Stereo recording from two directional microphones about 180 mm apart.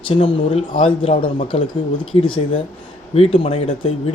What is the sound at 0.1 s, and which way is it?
Speech, 30° left (ahead or behind).